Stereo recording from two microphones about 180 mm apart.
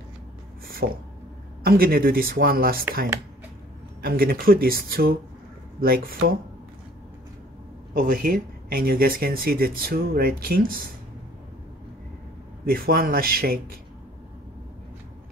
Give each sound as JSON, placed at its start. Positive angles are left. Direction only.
{"t": 0.8, "sound": "speech", "side_deg": -70}
{"t": 1.6, "sound": "speech", "side_deg": -55}
{"t": 4.0, "sound": "speech", "side_deg": -55}
{"t": 7.9, "sound": "speech", "side_deg": -50}
{"t": 12.6, "sound": "speech", "side_deg": -55}